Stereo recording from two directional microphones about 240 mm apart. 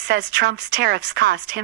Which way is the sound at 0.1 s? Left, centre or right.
Right.